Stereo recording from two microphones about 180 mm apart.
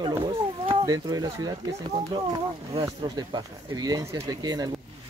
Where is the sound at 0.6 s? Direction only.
30° right (ahead or behind).